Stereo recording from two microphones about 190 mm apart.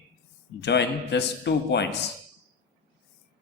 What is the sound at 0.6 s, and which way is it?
A man's voice, 65° left (ahead or behind).